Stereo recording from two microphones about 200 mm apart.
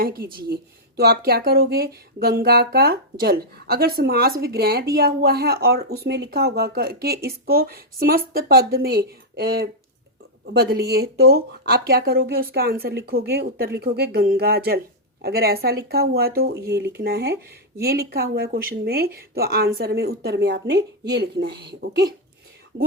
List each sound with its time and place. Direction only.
0.0 s speech: 45° right (ahead or behind)